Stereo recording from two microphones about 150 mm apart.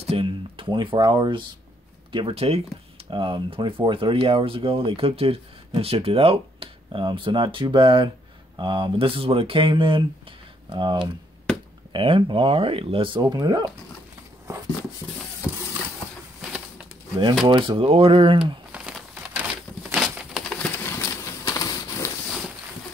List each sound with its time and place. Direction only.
0.0 s speech: 40° right (ahead or behind)
13.2 s speech: 25° right (ahead or behind)
14.5 s a sound: 20° right (ahead or behind)
17.5 s speech: 35° right (ahead or behind)
18.7 s crumpling: 5° right (ahead or behind)
20.7 s a sound: 15° left (ahead or behind)